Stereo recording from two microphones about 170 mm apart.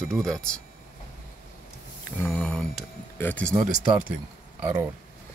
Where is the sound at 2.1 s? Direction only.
15° left (ahead or behind).